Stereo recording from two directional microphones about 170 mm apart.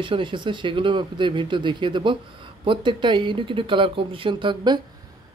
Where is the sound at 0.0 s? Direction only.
30° right (ahead or behind).